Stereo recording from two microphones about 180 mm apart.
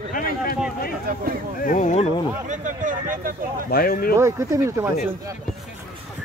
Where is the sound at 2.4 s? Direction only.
45° right (ahead or behind).